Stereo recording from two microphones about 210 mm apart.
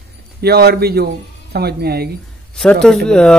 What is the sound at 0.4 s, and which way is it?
A man's voice, 50° right (ahead or behind).